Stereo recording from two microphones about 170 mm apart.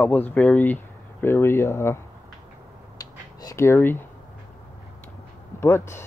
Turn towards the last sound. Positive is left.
turn(degrees=15)  # may be behind; listen again after turning